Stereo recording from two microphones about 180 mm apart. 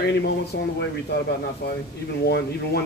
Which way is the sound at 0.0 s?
70° left (ahead or behind).